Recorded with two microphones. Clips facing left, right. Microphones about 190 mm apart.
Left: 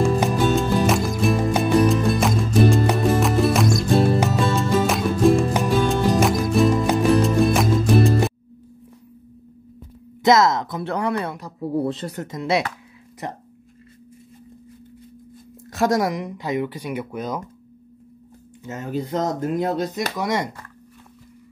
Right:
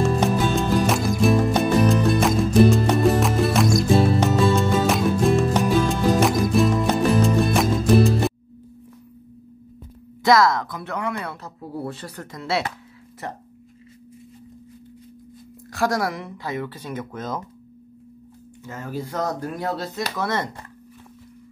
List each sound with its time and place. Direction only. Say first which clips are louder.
0.2 s music: left 1 dB; centre (ahead or behind)
10.2 s speech: left 1 dB; 20° left (ahead or behind)
11.2 s speech: left 6 dB; 15° left (ahead or behind)
15.7 s speech: left 3 dB; 20° left (ahead or behind)
18.6 s speech: left 4 dB; 20° left (ahead or behind)